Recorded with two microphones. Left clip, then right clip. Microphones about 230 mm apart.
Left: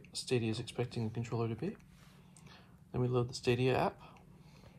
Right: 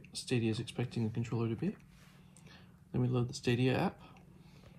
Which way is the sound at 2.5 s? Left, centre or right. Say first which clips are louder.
Right 1 dB; left.